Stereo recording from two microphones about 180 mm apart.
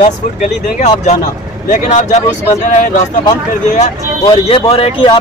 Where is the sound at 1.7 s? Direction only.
40° left (ahead or behind).